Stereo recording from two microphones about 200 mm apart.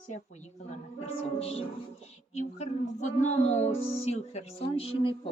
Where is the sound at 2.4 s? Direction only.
35° left (ahead or behind).